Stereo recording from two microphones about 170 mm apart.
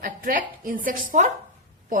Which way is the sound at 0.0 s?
55° right (ahead or behind).